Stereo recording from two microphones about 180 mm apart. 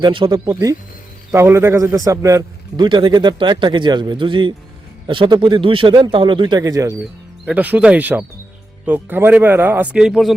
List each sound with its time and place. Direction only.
0.0 s a man's voice: 25° right (ahead or behind)
7.0 s speech: 5° right (ahead or behind)